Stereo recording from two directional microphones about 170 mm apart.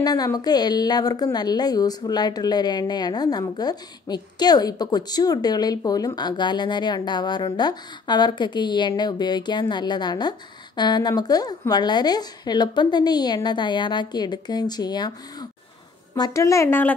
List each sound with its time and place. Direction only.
0.0 s a woman's voice: 20° left (ahead or behind)
16.2 s a woman's voice: 20° left (ahead or behind)